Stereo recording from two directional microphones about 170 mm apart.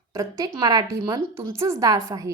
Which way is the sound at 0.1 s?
20° right (ahead or behind).